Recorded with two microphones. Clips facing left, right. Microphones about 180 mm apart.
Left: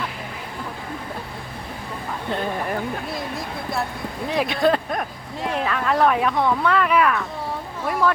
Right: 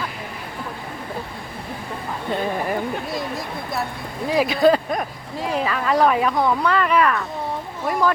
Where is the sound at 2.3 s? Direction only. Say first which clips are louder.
Right 2 dB; 5° right (ahead or behind).